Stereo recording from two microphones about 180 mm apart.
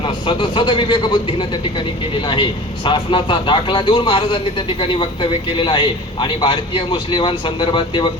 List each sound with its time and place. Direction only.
0.0 s a man's voice: 30° left (ahead or behind)